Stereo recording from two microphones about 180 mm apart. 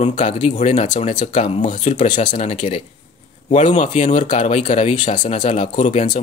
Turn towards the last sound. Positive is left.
turn(degrees=40)  # may be behind; listen again after turning